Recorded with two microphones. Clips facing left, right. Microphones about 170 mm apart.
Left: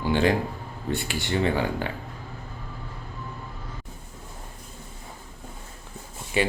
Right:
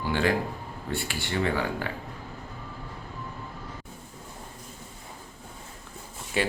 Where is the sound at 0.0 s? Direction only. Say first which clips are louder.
Left 3 dB; 20° left (ahead or behind).